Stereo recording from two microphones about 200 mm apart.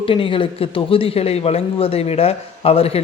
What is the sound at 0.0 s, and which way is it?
A man's voice, 25° left (ahead or behind).